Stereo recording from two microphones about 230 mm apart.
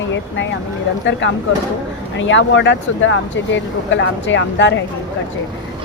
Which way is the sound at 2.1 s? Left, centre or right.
Left.